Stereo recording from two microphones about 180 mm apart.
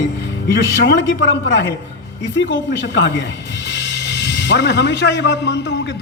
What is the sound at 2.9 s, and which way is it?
Speech, 85° left.